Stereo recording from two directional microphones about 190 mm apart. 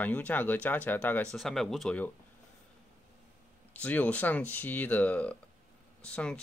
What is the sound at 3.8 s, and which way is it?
Speech, 10° left (ahead or behind).